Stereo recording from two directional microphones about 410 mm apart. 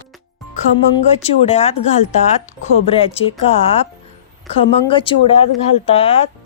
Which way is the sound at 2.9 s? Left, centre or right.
Centre.